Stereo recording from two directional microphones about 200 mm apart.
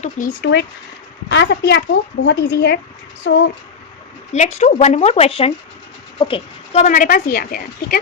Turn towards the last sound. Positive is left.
turn(degrees=45)  # may be behind; listen again after turning